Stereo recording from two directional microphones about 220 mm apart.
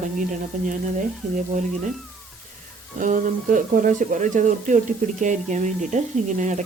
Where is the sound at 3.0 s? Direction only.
35° right (ahead or behind).